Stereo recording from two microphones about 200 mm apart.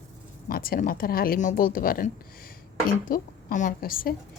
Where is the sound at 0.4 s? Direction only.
45° left (ahead or behind).